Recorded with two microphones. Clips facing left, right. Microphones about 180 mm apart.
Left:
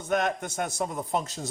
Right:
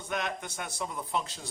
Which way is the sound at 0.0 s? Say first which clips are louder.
Left 7 dB; 45° left (ahead or behind).